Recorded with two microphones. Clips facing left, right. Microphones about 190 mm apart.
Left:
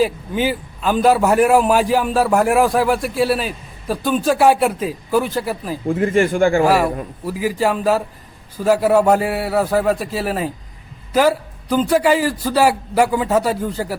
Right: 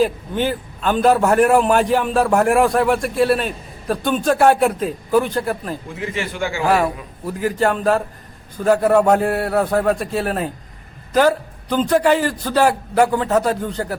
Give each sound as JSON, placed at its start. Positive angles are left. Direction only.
{"t": 0.0, "sound": "a man's voice", "side_deg": 5}
{"t": 5.9, "sound": "a man's voice", "side_deg": 50}
{"t": 6.7, "sound": "a man's voice", "side_deg": 5}